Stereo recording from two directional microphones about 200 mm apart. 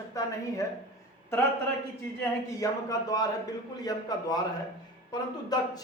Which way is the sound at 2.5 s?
15° left (ahead or behind).